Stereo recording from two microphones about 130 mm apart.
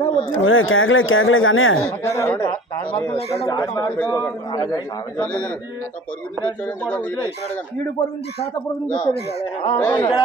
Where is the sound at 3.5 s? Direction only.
30° left (ahead or behind).